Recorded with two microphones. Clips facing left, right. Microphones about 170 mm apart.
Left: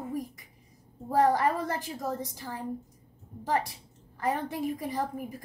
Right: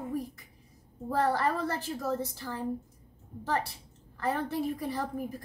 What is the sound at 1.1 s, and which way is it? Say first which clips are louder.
A woman's voice: left 4 dB; 15° left (ahead or behind).